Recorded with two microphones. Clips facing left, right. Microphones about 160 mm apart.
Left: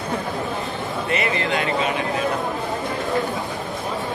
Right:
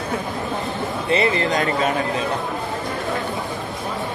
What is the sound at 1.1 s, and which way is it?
Speech, 30° right (ahead or behind).